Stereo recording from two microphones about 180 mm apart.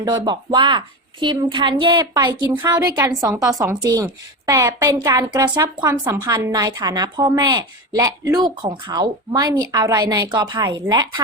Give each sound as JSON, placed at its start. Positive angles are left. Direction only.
{"t": 0.0, "sound": "a woman's voice", "side_deg": -25}